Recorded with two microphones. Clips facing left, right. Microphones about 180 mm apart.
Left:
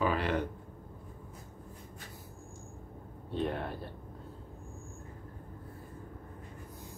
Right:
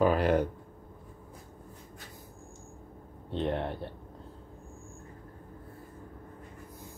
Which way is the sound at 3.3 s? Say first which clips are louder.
Right 3 dB; 25° right (ahead or behind).